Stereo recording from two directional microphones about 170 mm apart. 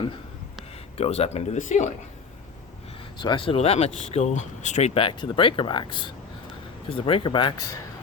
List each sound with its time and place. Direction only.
0.9 s speech: 35° left (ahead or behind)
3.2 s speech: 30° left (ahead or behind)